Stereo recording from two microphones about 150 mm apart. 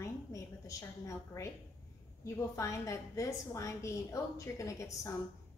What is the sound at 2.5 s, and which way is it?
A woman's voice, 20° left (ahead or behind).